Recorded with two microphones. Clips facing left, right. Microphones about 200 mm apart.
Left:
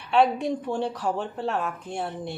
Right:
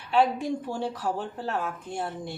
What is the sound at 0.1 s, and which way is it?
A woman's voice, 65° left (ahead or behind).